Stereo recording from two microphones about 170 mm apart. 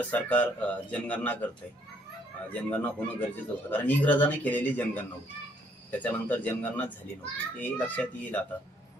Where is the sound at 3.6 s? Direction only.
10° left (ahead or behind).